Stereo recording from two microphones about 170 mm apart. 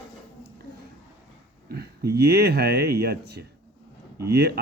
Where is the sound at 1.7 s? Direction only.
65° right (ahead or behind).